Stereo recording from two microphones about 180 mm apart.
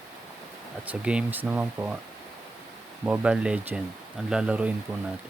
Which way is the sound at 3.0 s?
5° right (ahead or behind).